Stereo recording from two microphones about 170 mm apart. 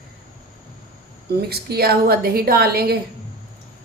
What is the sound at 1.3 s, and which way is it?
A woman's voice, 70° right (ahead or behind).